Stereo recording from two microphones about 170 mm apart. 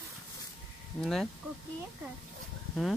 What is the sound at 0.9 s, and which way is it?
Speech, 5° left (ahead or behind).